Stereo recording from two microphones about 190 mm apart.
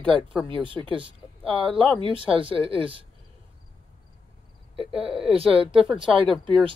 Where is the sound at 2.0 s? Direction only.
25° right (ahead or behind).